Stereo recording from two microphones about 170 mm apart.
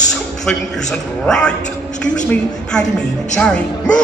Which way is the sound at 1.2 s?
5° left (ahead or behind).